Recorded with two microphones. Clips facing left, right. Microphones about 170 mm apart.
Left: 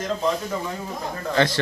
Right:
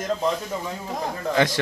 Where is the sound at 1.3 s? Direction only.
15° right (ahead or behind).